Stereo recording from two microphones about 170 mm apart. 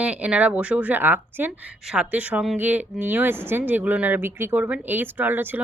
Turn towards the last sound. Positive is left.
turn(degrees=-10)  # may be behind; listen again after turning